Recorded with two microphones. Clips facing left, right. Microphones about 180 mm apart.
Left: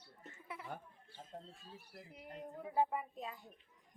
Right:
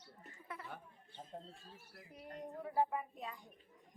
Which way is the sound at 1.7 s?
15° left (ahead or behind).